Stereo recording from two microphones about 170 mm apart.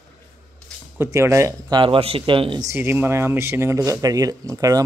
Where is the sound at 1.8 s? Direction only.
35° right (ahead or behind).